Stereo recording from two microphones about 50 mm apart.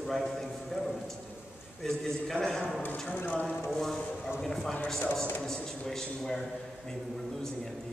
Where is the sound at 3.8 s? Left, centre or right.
Centre.